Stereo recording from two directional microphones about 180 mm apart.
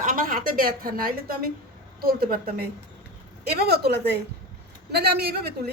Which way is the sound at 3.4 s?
60° right (ahead or behind).